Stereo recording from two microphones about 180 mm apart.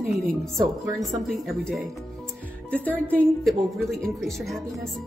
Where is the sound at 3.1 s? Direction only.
10° left (ahead or behind).